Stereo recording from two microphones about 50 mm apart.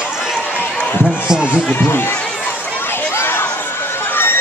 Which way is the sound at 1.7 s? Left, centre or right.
Left.